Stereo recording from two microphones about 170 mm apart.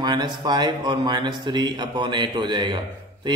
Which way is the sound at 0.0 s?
25° right (ahead or behind).